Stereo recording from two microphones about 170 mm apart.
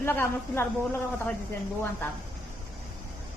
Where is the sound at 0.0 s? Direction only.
15° left (ahead or behind).